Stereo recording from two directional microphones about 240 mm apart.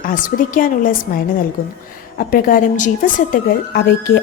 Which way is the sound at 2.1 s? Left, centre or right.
Left.